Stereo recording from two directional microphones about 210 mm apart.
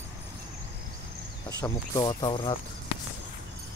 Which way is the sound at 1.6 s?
20° left (ahead or behind).